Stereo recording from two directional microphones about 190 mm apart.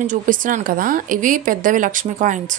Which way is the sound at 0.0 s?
45° right (ahead or behind).